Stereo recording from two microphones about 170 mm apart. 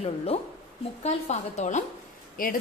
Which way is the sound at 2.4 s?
55° left (ahead or behind).